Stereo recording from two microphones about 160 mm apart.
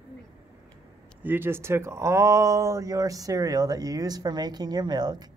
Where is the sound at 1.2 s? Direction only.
15° right (ahead or behind).